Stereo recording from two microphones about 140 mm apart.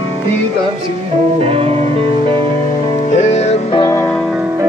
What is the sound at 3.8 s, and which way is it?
Music, 20° left (ahead or behind).